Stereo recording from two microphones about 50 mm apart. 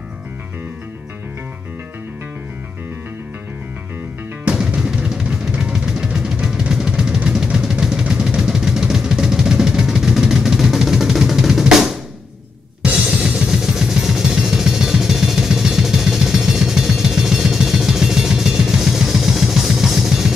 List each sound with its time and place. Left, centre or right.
4.6 s drum: centre
5.6 s music: centre
7.5 s a sound: centre
8.0 s music: centre